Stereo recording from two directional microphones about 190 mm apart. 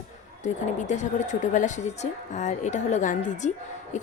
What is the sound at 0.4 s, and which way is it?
A woman's voice, 40° left (ahead or behind).